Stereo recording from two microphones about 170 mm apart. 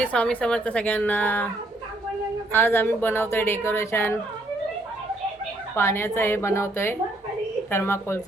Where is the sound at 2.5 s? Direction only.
10° left (ahead or behind).